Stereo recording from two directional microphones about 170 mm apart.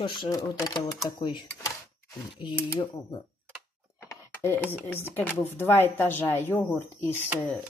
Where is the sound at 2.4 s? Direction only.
25° left (ahead or behind).